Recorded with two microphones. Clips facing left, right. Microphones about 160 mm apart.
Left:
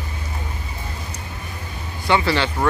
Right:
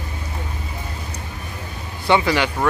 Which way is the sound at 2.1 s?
15° right (ahead or behind).